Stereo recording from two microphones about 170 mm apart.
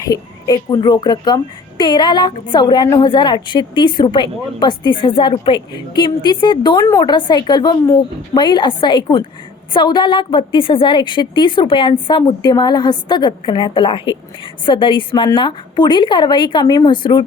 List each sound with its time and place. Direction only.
0.1 s a woman's voice: 25° left (ahead or behind)